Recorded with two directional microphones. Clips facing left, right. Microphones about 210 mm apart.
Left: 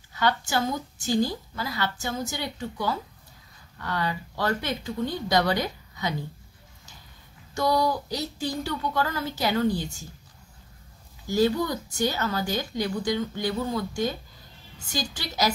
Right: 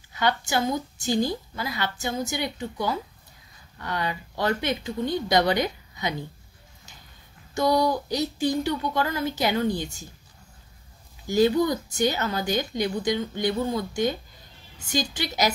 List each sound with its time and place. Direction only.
0.1 s speech: 15° right (ahead or behind)
7.5 s speech: 15° right (ahead or behind)
11.2 s a woman's voice: 15° right (ahead or behind)